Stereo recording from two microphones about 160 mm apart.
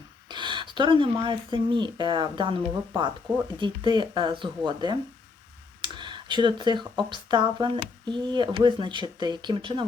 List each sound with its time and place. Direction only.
0.3 s speech: 30° right (ahead or behind)